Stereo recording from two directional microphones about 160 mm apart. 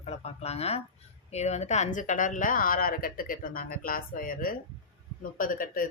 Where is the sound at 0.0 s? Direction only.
40° left (ahead or behind).